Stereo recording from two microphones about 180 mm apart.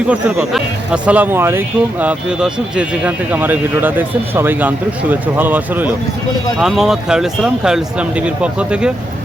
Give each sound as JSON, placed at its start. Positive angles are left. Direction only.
{"t": 0.1, "sound": "speech", "side_deg": -5}